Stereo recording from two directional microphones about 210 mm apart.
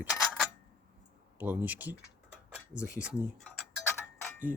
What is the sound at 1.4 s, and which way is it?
Speech, 10° right (ahead or behind).